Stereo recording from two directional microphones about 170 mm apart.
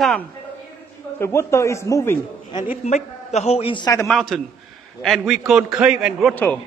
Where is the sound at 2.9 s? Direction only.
40° left (ahead or behind); by 4.1 s 20° left (ahead or behind).